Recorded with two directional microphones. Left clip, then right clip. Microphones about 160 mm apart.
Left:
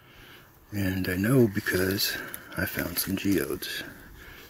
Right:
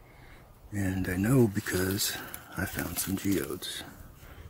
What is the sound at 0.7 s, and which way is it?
Speech, 5° left (ahead or behind).